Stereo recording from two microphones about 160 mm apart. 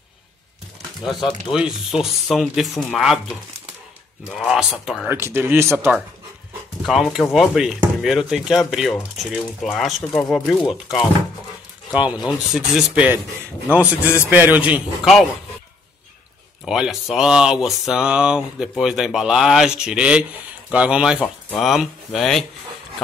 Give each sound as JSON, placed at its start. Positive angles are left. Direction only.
{"t": 1.5, "sound": "speech", "side_deg": 0}
{"t": 4.3, "sound": "speech", "side_deg": 0}
{"t": 5.1, "sound": "speech", "side_deg": -15}
{"t": 6.9, "sound": "speech", "side_deg": -5}
{"t": 16.6, "sound": "speech", "side_deg": -5}